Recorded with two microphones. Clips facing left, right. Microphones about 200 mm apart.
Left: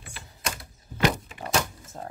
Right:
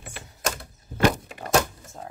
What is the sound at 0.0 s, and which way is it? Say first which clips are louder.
Typewriter: right 5 dB; 50° right (ahead or behind).